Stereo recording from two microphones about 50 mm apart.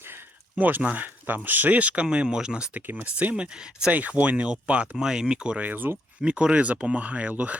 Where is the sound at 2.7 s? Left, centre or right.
Right.